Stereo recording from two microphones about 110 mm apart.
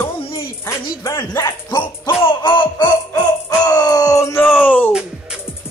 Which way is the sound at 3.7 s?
40° left (ahead or behind).